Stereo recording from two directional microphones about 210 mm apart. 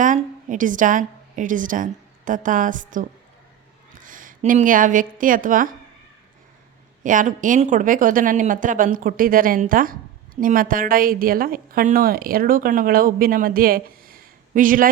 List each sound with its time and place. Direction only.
0.0 s a woman's voice: 35° right (ahead or behind)
7.0 s a woman's voice: 40° right (ahead or behind)